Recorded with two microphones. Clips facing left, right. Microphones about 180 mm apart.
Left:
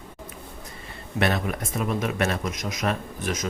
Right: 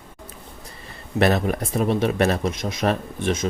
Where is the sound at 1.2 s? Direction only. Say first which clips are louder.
Right 5 dB; 35° right (ahead or behind).